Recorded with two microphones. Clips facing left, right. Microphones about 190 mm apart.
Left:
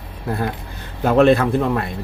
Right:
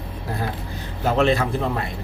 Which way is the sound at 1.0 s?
55° left (ahead or behind).